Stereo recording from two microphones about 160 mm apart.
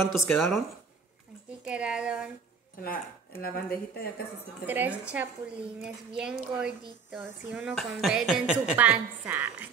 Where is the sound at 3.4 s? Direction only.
65° left (ahead or behind).